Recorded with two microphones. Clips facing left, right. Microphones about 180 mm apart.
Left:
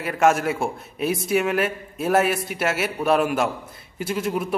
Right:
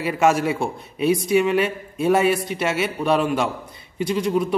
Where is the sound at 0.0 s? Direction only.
Centre (ahead or behind).